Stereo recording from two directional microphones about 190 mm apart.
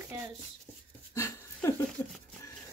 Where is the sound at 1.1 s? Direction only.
15° left (ahead or behind).